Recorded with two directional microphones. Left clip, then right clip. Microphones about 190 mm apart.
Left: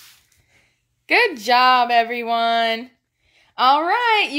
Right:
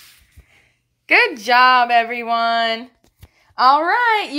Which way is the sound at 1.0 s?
10° left (ahead or behind).